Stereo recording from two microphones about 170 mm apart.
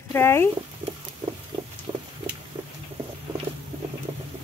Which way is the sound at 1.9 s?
20° right (ahead or behind).